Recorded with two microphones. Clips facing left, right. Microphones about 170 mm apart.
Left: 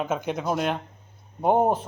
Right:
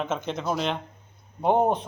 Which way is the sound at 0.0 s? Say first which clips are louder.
Left 2 dB; 10° left (ahead or behind).